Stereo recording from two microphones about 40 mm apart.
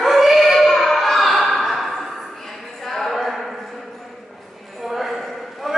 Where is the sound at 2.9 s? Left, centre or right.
Centre.